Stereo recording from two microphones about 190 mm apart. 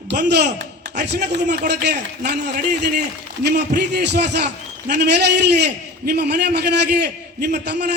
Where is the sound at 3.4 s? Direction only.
60° right (ahead or behind).